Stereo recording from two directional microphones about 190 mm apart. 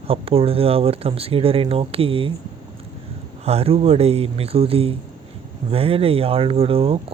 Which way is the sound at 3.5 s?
30° right (ahead or behind).